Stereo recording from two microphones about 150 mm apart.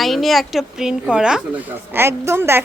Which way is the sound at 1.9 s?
15° right (ahead or behind).